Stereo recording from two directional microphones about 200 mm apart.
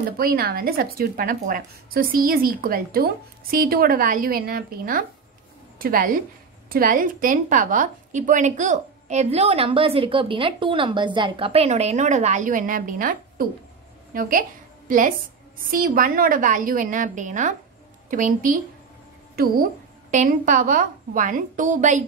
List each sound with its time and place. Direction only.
0.2 s a woman's voice: 50° right (ahead or behind)